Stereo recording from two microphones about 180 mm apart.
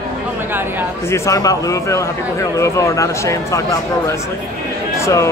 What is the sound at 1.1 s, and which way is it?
Speech, 20° left (ahead or behind).